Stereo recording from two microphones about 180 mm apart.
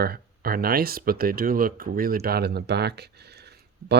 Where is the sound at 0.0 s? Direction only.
55° right (ahead or behind).